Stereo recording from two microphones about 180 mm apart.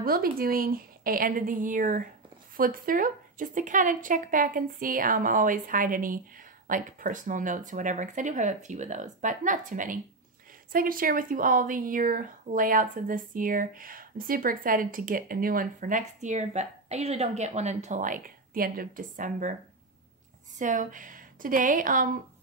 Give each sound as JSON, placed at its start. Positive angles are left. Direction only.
{"t": 0.0, "sound": "speech", "side_deg": -55}
{"t": 20.5, "sound": "speech", "side_deg": -45}